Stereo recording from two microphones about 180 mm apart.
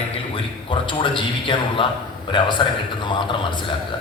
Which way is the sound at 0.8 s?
25° left (ahead or behind).